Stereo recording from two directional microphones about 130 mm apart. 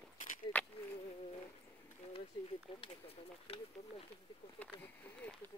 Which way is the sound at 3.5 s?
50° left (ahead or behind).